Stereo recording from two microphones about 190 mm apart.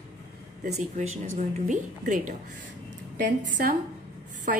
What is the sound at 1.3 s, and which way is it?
A woman's voice, 40° right (ahead or behind).